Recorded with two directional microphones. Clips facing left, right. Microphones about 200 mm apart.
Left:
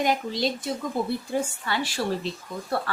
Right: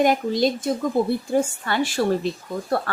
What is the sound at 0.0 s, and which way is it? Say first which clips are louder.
A woman's voice: right 6 dB; 50° right (ahead or behind).